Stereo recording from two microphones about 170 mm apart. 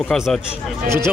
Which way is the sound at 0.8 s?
15° right (ahead or behind).